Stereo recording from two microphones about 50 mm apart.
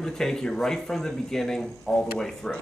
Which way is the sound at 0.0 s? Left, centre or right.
Centre.